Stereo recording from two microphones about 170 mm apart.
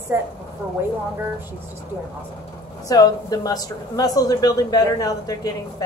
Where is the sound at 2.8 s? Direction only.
20° left (ahead or behind).